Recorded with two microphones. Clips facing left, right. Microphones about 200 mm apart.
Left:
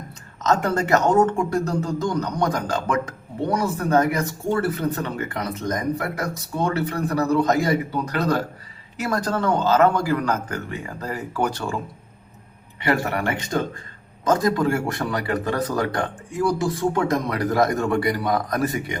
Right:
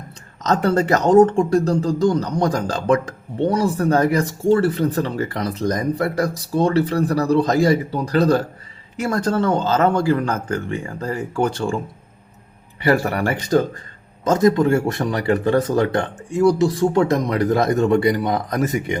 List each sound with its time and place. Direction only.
0.4 s speech: 35° right (ahead or behind)
12.8 s speech: 35° right (ahead or behind)
14.3 s speech: 20° right (ahead or behind)